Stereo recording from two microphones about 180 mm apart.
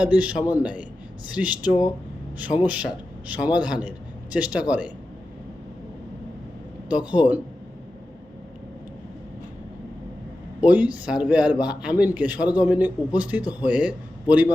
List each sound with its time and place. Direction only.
0.0 s a man's voice: 10° right (ahead or behind)
6.8 s a man's voice: 5° right (ahead or behind)
10.6 s a man's voice: 10° right (ahead or behind)